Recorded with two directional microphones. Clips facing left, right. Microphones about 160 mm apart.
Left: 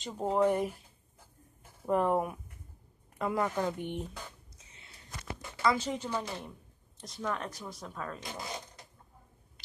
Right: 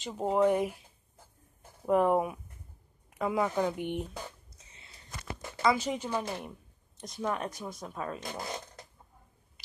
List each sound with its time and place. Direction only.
0.0 s speech: 5° right (ahead or behind)
1.9 s speech: 5° right (ahead or behind)
5.6 s speech: 15° right (ahead or behind)